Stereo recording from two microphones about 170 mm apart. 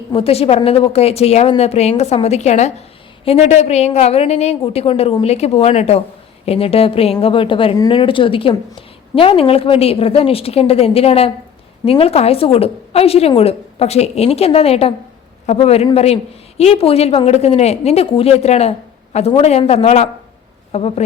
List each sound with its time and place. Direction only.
0.1 s a woman's voice: 35° left (ahead or behind)